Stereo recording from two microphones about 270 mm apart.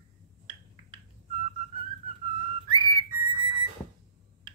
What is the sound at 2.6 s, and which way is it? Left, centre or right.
Whistle, centre.